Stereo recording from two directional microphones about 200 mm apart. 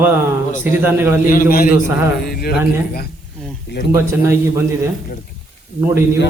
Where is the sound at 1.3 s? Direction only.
45° left (ahead or behind).